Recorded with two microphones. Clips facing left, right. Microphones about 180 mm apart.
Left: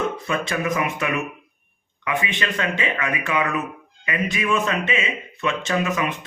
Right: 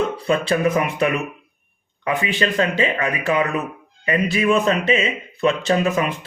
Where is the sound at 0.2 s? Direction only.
30° right (ahead or behind).